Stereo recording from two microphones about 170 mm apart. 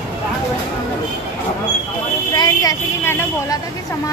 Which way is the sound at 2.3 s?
20° left (ahead or behind).